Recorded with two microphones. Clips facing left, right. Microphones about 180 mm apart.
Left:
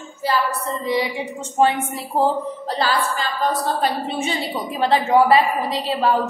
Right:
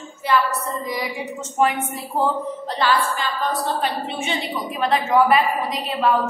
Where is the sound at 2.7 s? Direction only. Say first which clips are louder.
Right 1 dB; 40° left (ahead or behind).